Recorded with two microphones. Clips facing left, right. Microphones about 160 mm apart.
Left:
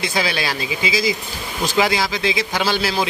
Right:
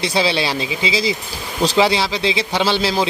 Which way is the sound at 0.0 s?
30° right (ahead or behind).